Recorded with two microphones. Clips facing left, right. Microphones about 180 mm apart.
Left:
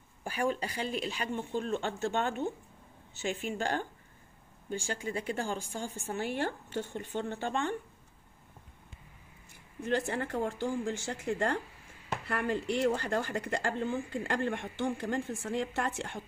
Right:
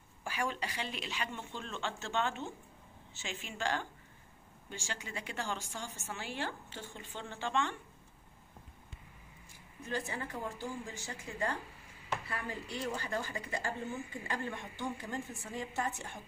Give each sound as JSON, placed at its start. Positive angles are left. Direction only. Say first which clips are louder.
{"t": 0.2, "sound": "speech", "louder": "left 5 dB", "side_deg": 40}
{"t": 5.0, "sound": "speech", "louder": "left 5 dB", "side_deg": 35}
{"t": 5.6, "sound": "speech", "louder": "left 5 dB", "side_deg": 50}
{"t": 5.9, "sound": "speech", "louder": "left 6 dB", "side_deg": 35}
{"t": 6.1, "sound": "speech", "louder": "left 7 dB", "side_deg": 55}
{"t": 9.8, "sound": "speech", "louder": "left 7 dB", "side_deg": 70}